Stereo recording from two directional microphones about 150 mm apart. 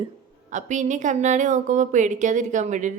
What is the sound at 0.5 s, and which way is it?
A woman's voice, 55° right (ahead or behind).